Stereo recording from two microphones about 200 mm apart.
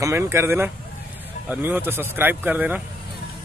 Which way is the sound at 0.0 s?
15° right (ahead or behind).